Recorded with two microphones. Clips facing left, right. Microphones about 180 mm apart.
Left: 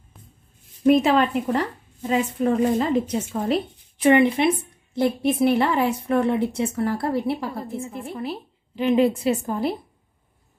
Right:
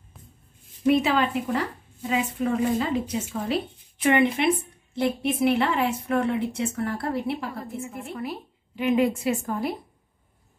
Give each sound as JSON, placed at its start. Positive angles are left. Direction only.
{"t": 0.8, "sound": "a woman's voice", "side_deg": 35}
{"t": 4.9, "sound": "a woman's voice", "side_deg": 35}